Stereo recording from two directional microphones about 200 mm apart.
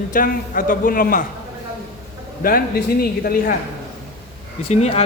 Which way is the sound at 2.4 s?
45° left (ahead or behind).